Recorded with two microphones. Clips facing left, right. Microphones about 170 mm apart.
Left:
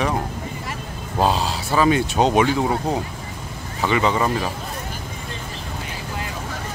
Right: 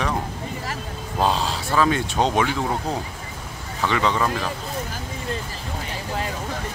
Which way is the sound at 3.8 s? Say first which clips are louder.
Left 2 dB; 10° left (ahead or behind).